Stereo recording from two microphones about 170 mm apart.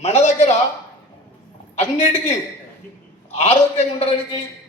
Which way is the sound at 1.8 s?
40° left (ahead or behind).